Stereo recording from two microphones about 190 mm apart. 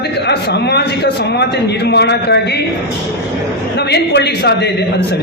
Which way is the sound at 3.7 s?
60° left (ahead or behind).